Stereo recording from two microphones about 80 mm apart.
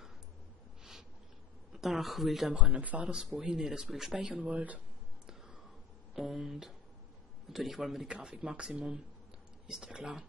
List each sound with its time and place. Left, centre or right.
1.7 s a woman's voice: centre
2.6 s a man's voice: centre